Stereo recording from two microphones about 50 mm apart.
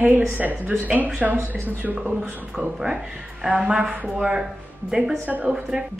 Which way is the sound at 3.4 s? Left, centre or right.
Centre.